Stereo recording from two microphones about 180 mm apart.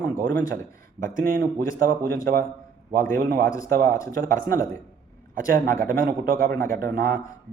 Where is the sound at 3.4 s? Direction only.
20° left (ahead or behind).